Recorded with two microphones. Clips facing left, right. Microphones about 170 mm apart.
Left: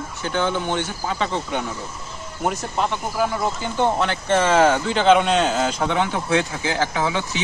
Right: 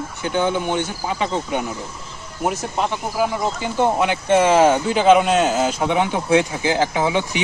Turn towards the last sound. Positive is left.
turn(degrees=-20)  # may be behind; listen again after turning